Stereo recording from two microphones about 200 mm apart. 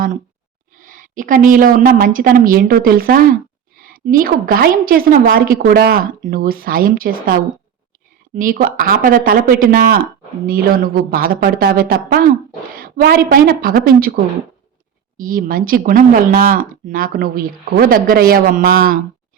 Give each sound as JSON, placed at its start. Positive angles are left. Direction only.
{"t": 0.8, "sound": "speech", "side_deg": -40}
{"t": 8.4, "sound": "speech", "side_deg": -45}
{"t": 15.2, "sound": "speech", "side_deg": -45}